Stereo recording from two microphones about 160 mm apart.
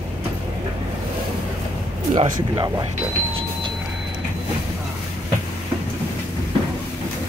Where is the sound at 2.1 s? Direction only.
30° right (ahead or behind).